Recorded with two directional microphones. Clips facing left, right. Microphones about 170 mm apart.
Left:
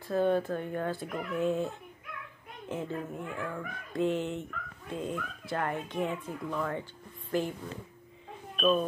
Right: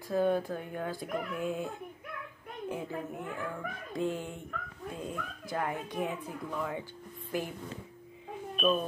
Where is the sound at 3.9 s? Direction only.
5° right (ahead or behind).